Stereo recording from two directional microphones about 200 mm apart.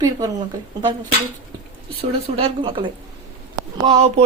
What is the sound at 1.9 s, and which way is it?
A woman's voice, 25° right (ahead or behind).